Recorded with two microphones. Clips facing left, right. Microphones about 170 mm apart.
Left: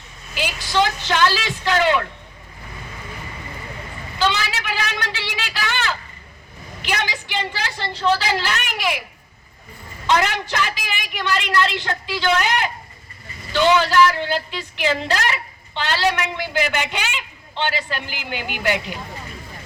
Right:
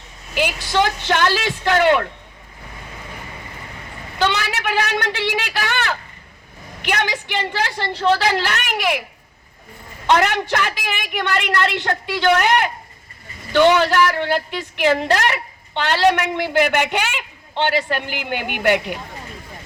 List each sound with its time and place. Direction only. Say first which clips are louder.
0.3 s a woman's voice: right 2 dB; 60° right (ahead or behind)
4.2 s a woman's voice: right 2 dB; 60° right (ahead or behind)
10.1 s a woman's voice: right 3 dB; 55° right (ahead or behind)